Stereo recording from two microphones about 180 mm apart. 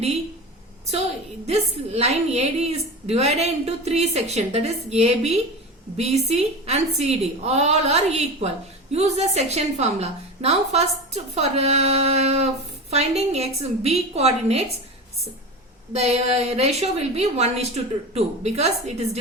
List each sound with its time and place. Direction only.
1.5 s a woman's voice: 35° right (ahead or behind)
15.9 s a woman's voice: 35° right (ahead or behind)